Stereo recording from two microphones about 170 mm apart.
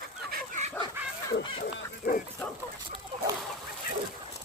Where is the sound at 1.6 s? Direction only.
55° left (ahead or behind).